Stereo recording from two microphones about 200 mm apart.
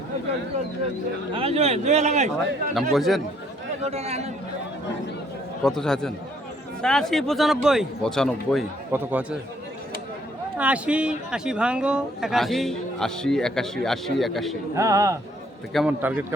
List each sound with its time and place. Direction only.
1.3 s speech: 30° right (ahead or behind)
2.9 s a man's voice: centre (ahead or behind)
3.8 s speech: 30° right (ahead or behind)
5.6 s a man's voice: 5° left (ahead or behind)
8.9 s speech: 10° right (ahead or behind)
10.6 s a man's voice: 5° right (ahead or behind)
14.8 s speech: 15° right (ahead or behind)
15.7 s speech: 5° right (ahead or behind)